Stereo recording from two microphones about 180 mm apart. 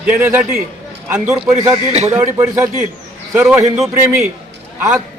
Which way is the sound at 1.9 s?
40° right (ahead or behind).